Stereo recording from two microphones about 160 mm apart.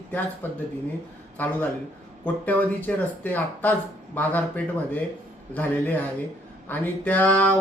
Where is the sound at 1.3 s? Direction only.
10° left (ahead or behind).